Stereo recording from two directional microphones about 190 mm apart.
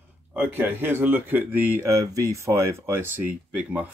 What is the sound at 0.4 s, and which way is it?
Speech, 10° right (ahead or behind).